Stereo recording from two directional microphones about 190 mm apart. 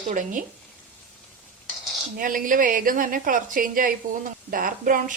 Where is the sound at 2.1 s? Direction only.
45° right (ahead or behind).